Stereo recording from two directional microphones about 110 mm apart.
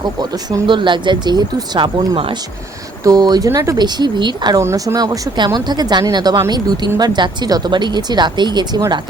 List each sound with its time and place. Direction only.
0.0 s speech: 40° right (ahead or behind)
4.6 s speech: 25° right (ahead or behind); by 9.0 s 40° right (ahead or behind)